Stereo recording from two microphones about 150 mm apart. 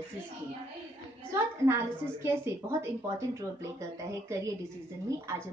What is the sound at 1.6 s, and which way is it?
A woman's voice, 20° right (ahead or behind).